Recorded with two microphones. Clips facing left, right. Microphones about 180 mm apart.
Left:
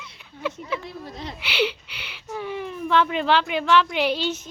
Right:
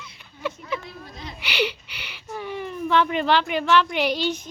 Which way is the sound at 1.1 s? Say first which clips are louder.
Left 4 dB; 65° left (ahead or behind).